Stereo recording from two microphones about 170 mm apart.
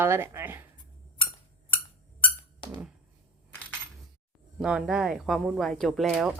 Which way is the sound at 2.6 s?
25° left (ahead or behind).